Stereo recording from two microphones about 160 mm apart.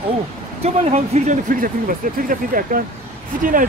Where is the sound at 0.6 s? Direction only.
45° right (ahead or behind).